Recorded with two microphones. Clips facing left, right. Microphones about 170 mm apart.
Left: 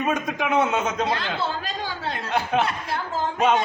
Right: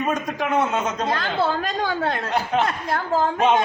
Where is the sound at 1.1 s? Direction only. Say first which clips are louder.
Right 4 dB; 45° right (ahead or behind).